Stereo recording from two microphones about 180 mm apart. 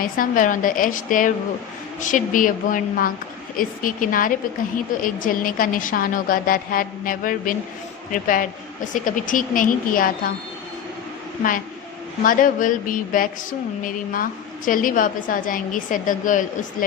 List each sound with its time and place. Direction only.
0.0 s a woman's voice: 50° left (ahead or behind)
12.2 s a woman's voice: 50° left (ahead or behind)